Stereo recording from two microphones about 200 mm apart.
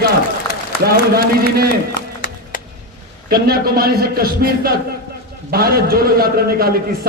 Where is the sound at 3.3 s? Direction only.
50° right (ahead or behind).